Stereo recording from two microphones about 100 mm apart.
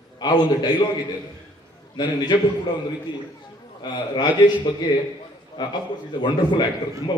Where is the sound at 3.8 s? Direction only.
45° left (ahead or behind).